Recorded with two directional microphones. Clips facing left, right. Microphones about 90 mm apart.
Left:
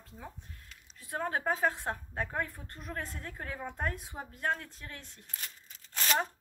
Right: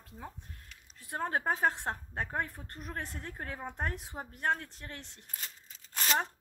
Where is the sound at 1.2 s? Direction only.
30° right (ahead or behind).